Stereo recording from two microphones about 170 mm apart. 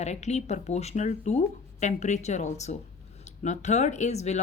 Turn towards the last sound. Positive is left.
turn(degrees=40)  # may be behind; listen again after turning